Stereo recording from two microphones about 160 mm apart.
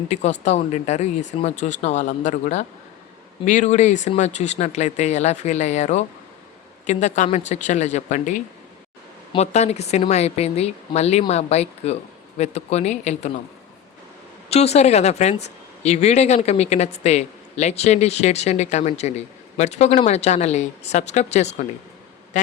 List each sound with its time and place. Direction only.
0.1 s speech: 45° left (ahead or behind)
14.5 s speech: 40° left (ahead or behind)